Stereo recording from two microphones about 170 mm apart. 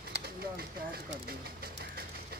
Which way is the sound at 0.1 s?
65° right (ahead or behind).